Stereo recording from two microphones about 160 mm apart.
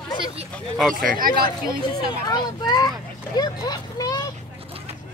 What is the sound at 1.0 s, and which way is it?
Speech, 60° right (ahead or behind).